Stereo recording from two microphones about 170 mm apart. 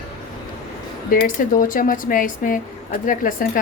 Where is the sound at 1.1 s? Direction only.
55° left (ahead or behind).